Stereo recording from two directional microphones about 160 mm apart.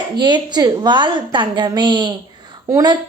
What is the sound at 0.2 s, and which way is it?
A woman's voice, 30° right (ahead or behind).